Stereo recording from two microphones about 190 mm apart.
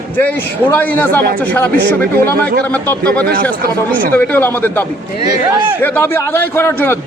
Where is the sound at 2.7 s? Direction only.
10° left (ahead or behind).